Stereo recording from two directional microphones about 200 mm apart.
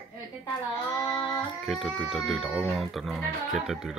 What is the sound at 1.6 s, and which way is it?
Speech, centre (ahead or behind).